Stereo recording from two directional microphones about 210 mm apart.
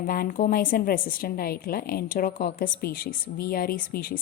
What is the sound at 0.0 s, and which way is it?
A woman's voice, 40° left (ahead or behind).